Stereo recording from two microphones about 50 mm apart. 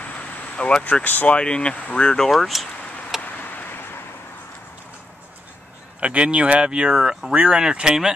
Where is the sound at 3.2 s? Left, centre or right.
Left.